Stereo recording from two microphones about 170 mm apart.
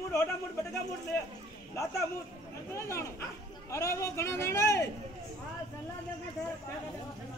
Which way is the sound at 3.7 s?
15° left (ahead or behind).